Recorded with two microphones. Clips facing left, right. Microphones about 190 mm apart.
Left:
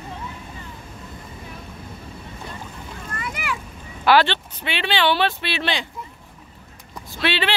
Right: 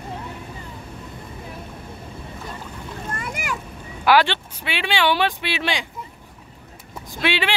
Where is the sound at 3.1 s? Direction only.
45° right (ahead or behind).